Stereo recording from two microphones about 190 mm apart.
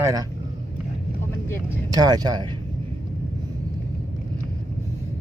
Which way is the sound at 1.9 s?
20° right (ahead or behind).